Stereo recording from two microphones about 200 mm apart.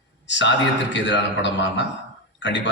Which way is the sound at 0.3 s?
65° left (ahead or behind).